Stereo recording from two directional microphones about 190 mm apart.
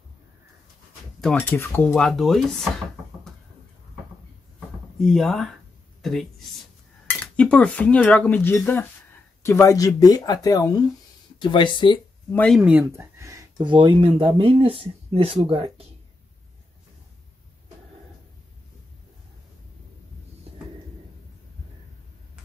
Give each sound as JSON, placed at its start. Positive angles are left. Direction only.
{"t": 1.2, "sound": "speech", "side_deg": 10}
{"t": 4.9, "sound": "speech", "side_deg": 0}
{"t": 12.3, "sound": "speech", "side_deg": 5}